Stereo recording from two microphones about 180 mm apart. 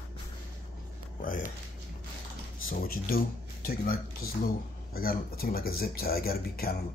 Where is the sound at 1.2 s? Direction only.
50° left (ahead or behind).